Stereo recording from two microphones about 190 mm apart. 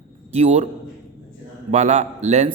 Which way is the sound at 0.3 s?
35° right (ahead or behind).